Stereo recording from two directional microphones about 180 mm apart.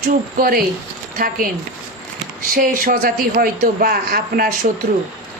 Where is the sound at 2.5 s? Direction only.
50° right (ahead or behind).